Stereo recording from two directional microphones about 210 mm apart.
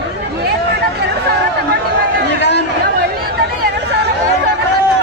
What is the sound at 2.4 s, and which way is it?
Chatter, 55° left (ahead or behind).